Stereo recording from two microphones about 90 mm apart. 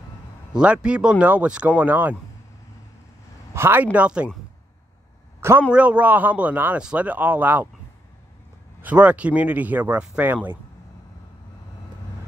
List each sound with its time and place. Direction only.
0.5 s speech: 10° right (ahead or behind)
3.5 s a man's voice: 25° right (ahead or behind)
3.8 s speech: 15° right (ahead or behind)
5.7 s speech: 15° right (ahead or behind)
8.8 s speech: 15° right (ahead or behind)